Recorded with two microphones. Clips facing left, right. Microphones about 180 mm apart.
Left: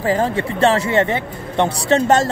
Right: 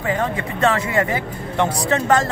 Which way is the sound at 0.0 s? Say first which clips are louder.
Left 4 dB; 35° left (ahead or behind).